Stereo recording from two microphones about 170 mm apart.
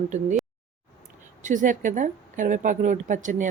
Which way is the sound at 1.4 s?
50° right (ahead or behind).